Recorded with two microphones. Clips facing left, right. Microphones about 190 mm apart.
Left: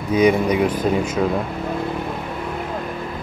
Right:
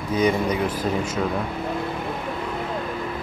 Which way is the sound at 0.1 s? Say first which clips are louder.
Left 5 dB; 10° left (ahead or behind).